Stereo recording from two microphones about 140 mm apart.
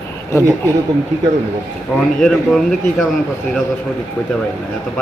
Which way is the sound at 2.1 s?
5° left (ahead or behind).